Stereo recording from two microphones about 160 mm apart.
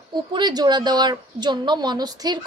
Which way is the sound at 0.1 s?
30° right (ahead or behind).